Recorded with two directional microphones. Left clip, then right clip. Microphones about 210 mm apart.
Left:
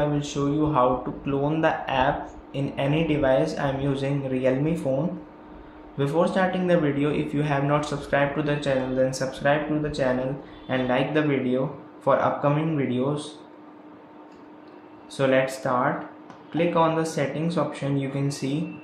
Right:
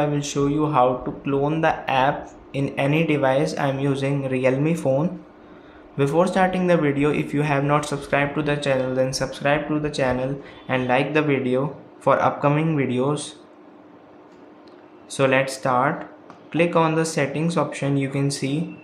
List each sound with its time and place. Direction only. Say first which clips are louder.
0.0 s a man's voice: right 3 dB; 25° right (ahead or behind)
5.9 s a man's voice: right 4 dB; 25° right (ahead or behind)
15.0 s a man's voice: right 2 dB; 25° right (ahead or behind)